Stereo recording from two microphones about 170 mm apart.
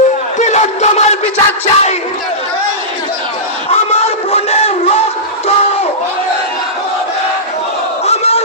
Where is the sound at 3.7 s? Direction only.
35° left (ahead or behind).